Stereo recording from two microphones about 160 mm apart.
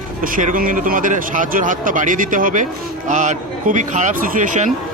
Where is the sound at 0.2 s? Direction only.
60° right (ahead or behind).